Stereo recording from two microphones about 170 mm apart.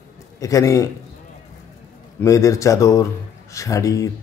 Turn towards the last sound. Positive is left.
turn(degrees=20)  # may be behind; listen again after turning